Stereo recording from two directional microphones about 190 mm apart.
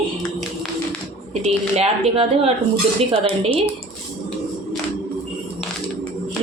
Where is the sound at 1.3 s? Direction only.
35° right (ahead or behind).